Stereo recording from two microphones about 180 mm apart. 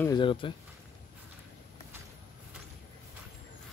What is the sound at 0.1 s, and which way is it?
Speech, 30° left (ahead or behind).